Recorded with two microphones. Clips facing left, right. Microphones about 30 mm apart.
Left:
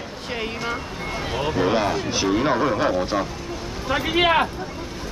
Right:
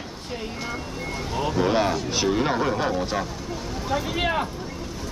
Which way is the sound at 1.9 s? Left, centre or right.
Centre.